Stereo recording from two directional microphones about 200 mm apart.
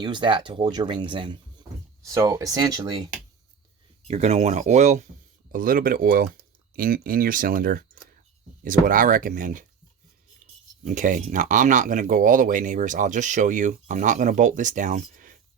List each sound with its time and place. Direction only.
0.0 s speech: 25° right (ahead or behind)
4.1 s speech: 35° right (ahead or behind)
10.8 s speech: 40° right (ahead or behind)